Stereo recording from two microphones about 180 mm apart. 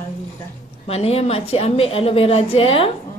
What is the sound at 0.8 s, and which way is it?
A woman's voice, 35° left (ahead or behind).